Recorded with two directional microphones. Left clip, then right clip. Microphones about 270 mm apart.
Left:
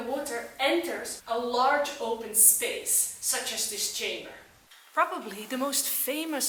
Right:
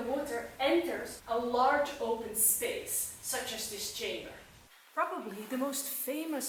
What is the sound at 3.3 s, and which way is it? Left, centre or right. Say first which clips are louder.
Speech: left 3 dB; centre.